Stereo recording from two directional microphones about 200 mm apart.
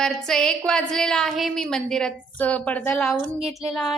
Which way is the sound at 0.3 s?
Centre (ahead or behind).